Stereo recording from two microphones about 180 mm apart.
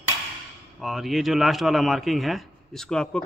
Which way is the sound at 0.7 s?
Centre (ahead or behind).